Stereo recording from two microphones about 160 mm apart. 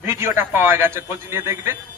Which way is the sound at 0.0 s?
15° right (ahead or behind).